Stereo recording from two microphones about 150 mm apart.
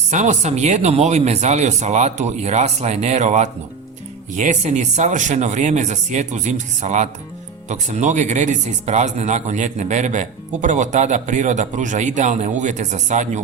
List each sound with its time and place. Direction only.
0.1 s speech: 50° right (ahead or behind)